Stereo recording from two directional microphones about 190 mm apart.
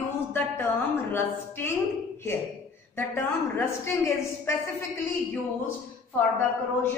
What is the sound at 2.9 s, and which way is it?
A woman's voice, 15° left (ahead or behind).